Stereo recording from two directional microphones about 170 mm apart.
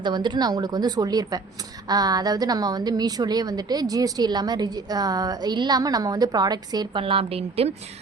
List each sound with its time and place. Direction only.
0.0 s a woman's voice: 25° right (ahead or behind)